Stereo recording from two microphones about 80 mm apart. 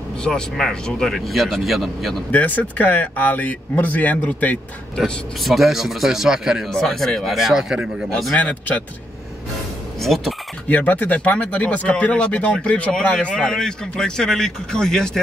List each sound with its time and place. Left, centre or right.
0.2 s speech: centre
2.3 s speech: centre
4.9 s speech: centre
5.5 s speech: centre
6.7 s speech: centre
8.4 s speech: centre
9.9 s speech: centre
10.7 s speech: centre